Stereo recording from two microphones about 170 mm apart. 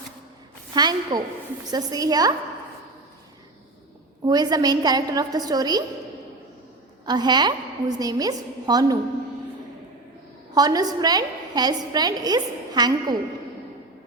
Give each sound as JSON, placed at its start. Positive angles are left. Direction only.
{"t": 0.7, "sound": "a woman's voice", "side_deg": -25}
{"t": 4.3, "sound": "a woman's voice", "side_deg": -25}
{"t": 7.0, "sound": "a woman's voice", "side_deg": -25}
{"t": 10.5, "sound": "a woman's voice", "side_deg": -20}